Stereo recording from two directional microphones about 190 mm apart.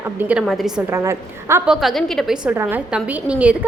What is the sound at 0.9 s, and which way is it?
Speech, 15° right (ahead or behind).